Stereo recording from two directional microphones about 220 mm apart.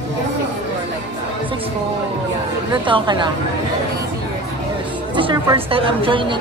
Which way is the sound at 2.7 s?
20° right (ahead or behind).